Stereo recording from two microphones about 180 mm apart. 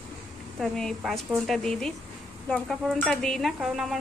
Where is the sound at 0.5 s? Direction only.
Centre (ahead or behind).